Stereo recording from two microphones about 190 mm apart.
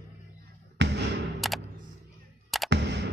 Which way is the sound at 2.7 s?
65° right (ahead or behind).